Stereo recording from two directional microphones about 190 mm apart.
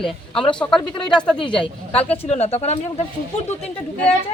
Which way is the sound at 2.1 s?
35° left (ahead or behind).